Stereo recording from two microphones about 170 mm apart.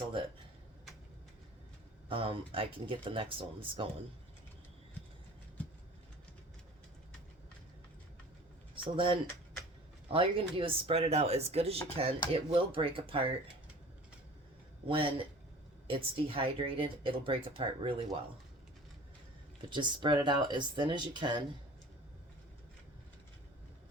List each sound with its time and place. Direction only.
2.0 s speech: 30° right (ahead or behind)
8.7 s a sound: 30° right (ahead or behind)
10.1 s speech: 30° right (ahead or behind)
14.8 s speech: 30° right (ahead or behind)
19.7 s speech: 30° right (ahead or behind)